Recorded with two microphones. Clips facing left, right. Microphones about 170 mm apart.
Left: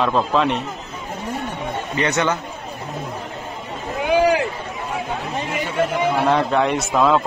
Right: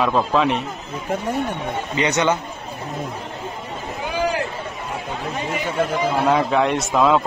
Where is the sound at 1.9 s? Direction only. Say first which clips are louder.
Right 1 dB; 20° right (ahead or behind).